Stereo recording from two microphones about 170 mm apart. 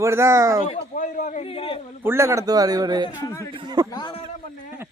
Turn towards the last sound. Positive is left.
turn(degrees=25)  # may be behind; listen again after turning